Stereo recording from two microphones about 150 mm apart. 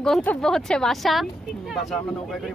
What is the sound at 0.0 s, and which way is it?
Speech, 5° left (ahead or behind).